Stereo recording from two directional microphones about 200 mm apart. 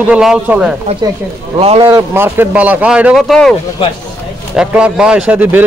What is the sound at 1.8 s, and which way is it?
Speech, 10° right (ahead or behind).